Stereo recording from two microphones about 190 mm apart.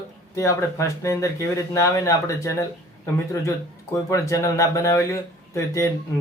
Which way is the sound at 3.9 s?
15° left (ahead or behind).